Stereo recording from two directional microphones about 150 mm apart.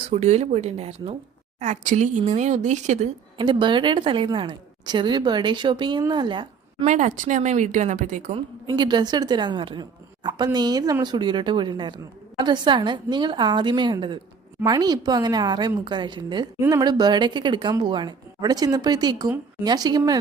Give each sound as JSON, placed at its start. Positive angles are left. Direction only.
{"t": 0.0, "sound": "speech", "side_deg": -45}
{"t": 3.3, "sound": "a woman's voice", "side_deg": -30}
{"t": 6.8, "sound": "speech", "side_deg": -55}
{"t": 8.6, "sound": "a woman's voice", "side_deg": -30}